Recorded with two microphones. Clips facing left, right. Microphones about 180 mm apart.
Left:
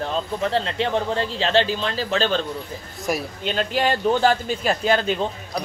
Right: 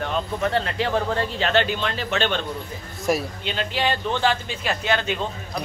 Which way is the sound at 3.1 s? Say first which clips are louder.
Right 2 dB; centre (ahead or behind).